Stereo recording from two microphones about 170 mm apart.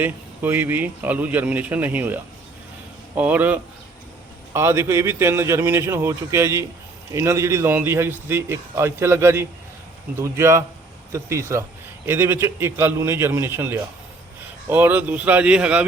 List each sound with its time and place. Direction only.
0.0 s a man's voice: 10° right (ahead or behind)